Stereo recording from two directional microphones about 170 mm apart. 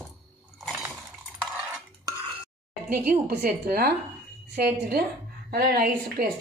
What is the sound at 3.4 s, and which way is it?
A woman's voice, 65° right (ahead or behind).